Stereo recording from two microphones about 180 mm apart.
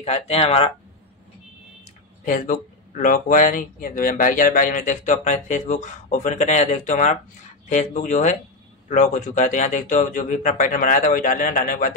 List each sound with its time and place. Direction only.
0.0 s speech: 35° left (ahead or behind)
2.2 s speech: 45° left (ahead or behind)